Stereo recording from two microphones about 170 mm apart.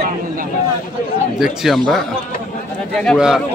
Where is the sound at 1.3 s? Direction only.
Centre (ahead or behind).